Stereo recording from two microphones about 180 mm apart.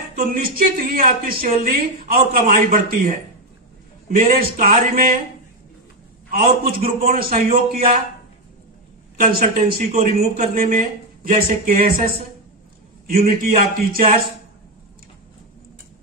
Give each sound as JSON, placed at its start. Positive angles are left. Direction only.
{"t": 0.1, "sound": "speech", "side_deg": -55}
{"t": 6.3, "sound": "speech", "side_deg": -55}
{"t": 7.4, "sound": "a man's voice", "side_deg": -35}
{"t": 9.1, "sound": "a woman's voice", "side_deg": -55}